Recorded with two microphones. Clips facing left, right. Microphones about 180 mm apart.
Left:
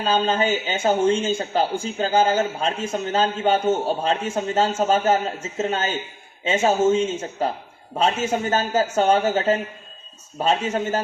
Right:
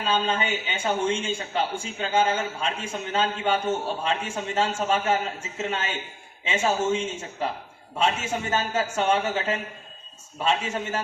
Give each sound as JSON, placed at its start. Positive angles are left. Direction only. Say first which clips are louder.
{"t": 0.0, "sound": "speech", "louder": "left 5 dB", "side_deg": 35}